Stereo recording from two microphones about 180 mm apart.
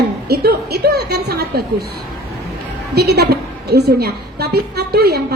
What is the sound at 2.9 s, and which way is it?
A woman's voice, 65° right (ahead or behind).